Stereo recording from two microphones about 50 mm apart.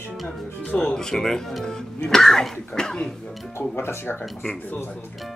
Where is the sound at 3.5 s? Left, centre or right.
Left.